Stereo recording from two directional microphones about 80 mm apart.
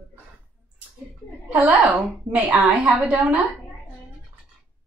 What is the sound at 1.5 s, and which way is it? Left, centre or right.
Speech, centre.